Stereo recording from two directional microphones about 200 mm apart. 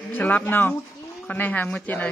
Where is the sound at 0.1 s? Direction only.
10° left (ahead or behind).